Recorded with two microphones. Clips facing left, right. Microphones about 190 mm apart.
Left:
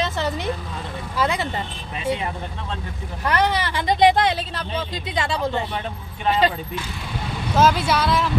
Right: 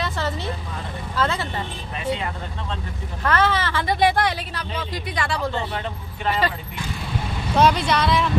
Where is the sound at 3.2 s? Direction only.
15° left (ahead or behind).